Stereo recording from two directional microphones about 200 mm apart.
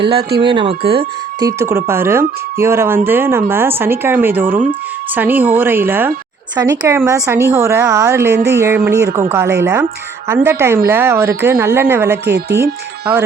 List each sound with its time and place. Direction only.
0.3 s speech: 25° right (ahead or behind)
12.1 s speech: 55° right (ahead or behind)